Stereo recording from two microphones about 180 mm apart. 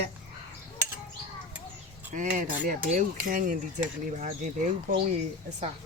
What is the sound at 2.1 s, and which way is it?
Speech, 45° right (ahead or behind).